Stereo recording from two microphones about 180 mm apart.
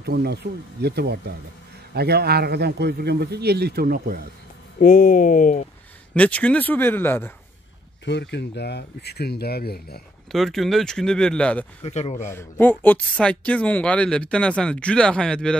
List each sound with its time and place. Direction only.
0.0 s a man's voice: 65° right (ahead or behind)
4.7 s speech: 50° left (ahead or behind)
6.1 s speech: 5° left (ahead or behind)
8.0 s speech: 75° left (ahead or behind)
10.3 s speech: centre (ahead or behind)
11.8 s speech: 40° left (ahead or behind)
12.3 s speech: 10° left (ahead or behind)